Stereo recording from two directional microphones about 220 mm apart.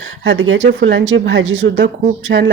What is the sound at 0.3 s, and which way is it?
Speech, 60° right (ahead or behind).